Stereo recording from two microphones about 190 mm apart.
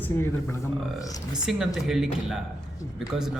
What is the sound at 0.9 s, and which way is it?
Speech, 20° left (ahead or behind).